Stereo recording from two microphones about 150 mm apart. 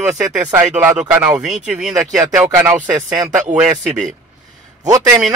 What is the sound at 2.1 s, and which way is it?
Speech, 20° right (ahead or behind).